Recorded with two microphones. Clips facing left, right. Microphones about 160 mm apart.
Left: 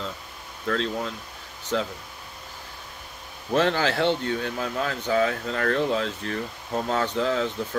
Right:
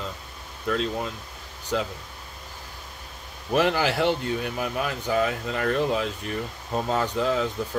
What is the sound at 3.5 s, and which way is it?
Speech, 10° right (ahead or behind).